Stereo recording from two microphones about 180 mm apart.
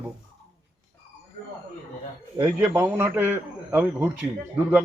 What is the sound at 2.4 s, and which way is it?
A man's voice, 15° right (ahead or behind).